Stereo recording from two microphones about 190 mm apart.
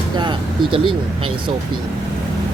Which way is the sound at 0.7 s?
25° right (ahead or behind).